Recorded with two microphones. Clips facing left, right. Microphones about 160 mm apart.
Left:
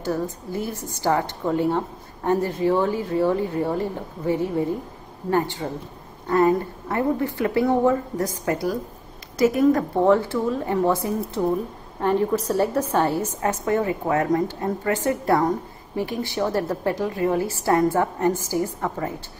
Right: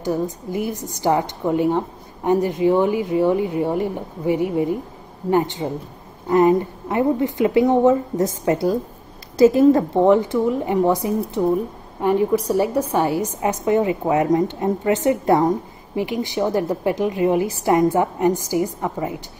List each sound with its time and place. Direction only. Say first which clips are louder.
0.0 s a woman's voice: right 3 dB; 15° right (ahead or behind)